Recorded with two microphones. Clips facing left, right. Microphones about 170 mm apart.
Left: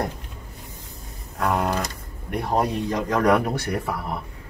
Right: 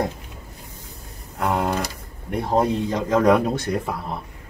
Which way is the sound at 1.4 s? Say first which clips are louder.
Right 1 dB; 20° right (ahead or behind).